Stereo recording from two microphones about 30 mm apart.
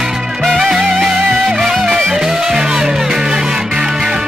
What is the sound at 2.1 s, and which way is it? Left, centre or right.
Music, centre.